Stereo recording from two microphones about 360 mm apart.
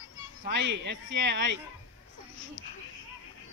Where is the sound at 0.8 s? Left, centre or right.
Right.